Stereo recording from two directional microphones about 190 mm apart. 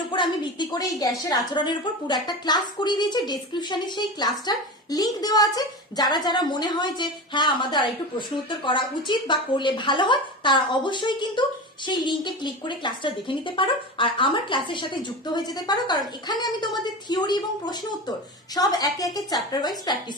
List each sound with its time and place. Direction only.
0.1 s a woman's voice: 25° left (ahead or behind)